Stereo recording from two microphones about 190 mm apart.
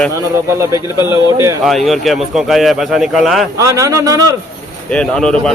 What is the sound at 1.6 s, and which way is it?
Speech, centre (ahead or behind).